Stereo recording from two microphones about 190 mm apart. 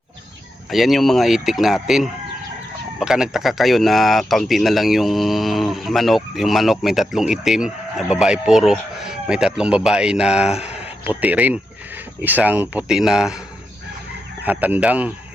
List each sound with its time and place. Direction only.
0.7 s speech: centre (ahead or behind)
14.4 s speech: 10° right (ahead or behind)